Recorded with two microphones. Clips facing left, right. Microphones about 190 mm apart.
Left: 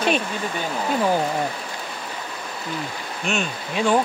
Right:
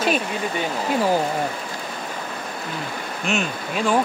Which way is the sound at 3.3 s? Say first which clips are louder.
Right 1 dB; centre (ahead or behind).